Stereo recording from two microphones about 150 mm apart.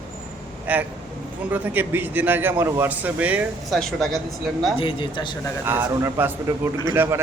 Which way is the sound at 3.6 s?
Centre (ahead or behind).